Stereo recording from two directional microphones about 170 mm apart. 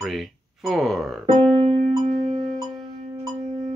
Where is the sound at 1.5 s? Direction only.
35° right (ahead or behind).